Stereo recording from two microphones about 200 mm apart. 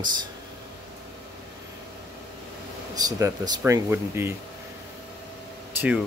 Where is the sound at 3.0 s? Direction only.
15° right (ahead or behind).